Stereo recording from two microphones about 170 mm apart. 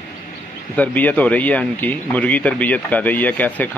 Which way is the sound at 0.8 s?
10° left (ahead or behind).